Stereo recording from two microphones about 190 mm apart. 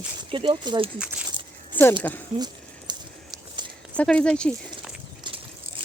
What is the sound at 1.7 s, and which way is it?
Speech, 10° left (ahead or behind).